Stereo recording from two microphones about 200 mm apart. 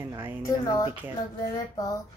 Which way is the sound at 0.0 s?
10° right (ahead or behind).